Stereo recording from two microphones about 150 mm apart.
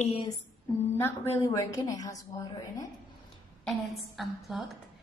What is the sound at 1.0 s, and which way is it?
A woman's voice, 20° left (ahead or behind).